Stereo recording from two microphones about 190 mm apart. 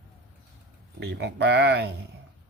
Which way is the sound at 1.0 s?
65° right (ahead or behind).